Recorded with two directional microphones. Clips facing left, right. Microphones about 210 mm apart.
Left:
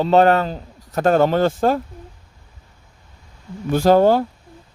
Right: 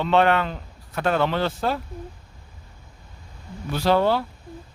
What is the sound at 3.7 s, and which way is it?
Speech, 45° left (ahead or behind).